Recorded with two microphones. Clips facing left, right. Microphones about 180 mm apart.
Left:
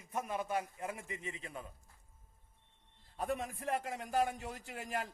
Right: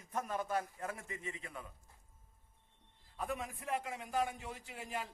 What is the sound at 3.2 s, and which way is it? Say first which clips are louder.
A man's voice: left 3 dB; 35° left (ahead or behind).